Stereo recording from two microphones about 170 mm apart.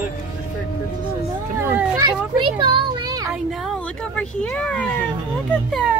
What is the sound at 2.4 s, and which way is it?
Speech, 25° right (ahead or behind).